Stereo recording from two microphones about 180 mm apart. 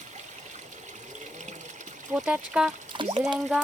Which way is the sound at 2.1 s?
5° right (ahead or behind).